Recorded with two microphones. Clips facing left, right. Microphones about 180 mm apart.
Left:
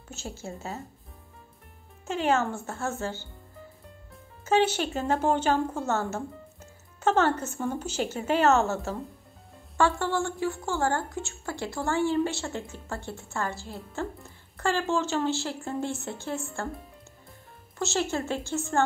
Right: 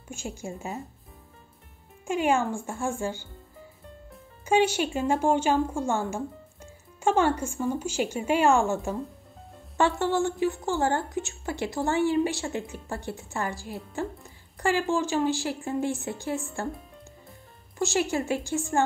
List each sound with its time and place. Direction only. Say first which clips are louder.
0.1 s speech: right 2 dB; 15° right (ahead or behind)
2.0 s speech: right 1 dB; 15° right (ahead or behind)
4.5 s a woman's voice: right 1 dB; 10° right (ahead or behind)
17.7 s speech: right 2 dB; 15° right (ahead or behind)